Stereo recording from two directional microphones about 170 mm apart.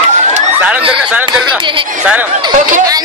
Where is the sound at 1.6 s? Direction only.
30° right (ahead or behind).